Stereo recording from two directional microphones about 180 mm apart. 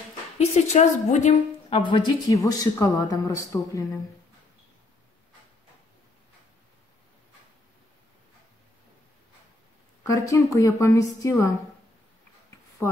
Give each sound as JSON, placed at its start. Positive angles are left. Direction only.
{"t": 0.4, "sound": "a woman's voice", "side_deg": 40}
{"t": 1.8, "sound": "speech", "side_deg": 25}
{"t": 10.0, "sound": "a woman's voice", "side_deg": 20}